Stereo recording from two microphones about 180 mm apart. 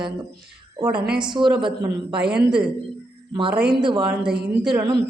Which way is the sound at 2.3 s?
5° right (ahead or behind).